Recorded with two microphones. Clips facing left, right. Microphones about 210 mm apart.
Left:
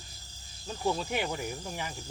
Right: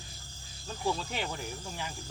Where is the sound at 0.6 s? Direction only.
10° left (ahead or behind).